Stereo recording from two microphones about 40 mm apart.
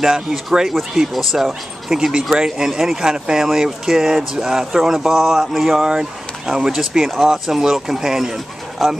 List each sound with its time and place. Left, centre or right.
0.0 s speech: centre
5.4 s a sound: centre
5.9 s speech: centre